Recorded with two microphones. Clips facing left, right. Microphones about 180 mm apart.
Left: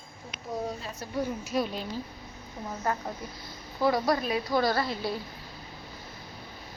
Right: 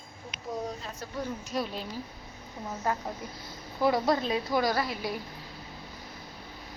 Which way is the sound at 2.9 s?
15° right (ahead or behind).